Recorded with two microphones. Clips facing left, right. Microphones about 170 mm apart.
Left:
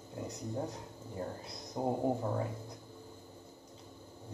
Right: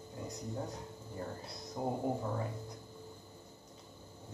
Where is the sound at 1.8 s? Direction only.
20° left (ahead or behind).